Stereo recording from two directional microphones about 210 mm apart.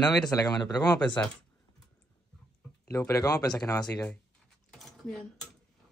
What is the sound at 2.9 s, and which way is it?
Speech, 15° left (ahead or behind).